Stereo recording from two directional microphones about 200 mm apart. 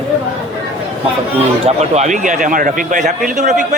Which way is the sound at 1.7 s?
35° right (ahead or behind).